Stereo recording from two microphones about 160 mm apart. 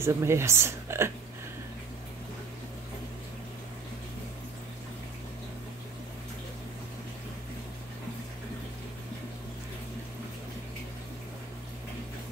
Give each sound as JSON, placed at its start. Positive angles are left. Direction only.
{"t": 0.0, "sound": "speech", "side_deg": -15}